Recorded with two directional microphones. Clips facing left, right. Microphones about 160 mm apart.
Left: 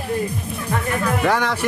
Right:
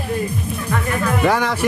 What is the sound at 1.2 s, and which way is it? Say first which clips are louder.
Speech: right 3 dB; 5° right (ahead or behind).